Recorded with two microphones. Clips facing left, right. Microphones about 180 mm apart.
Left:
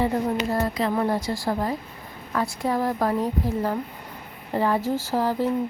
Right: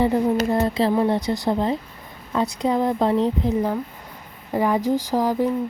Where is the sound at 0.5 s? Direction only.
25° right (ahead or behind).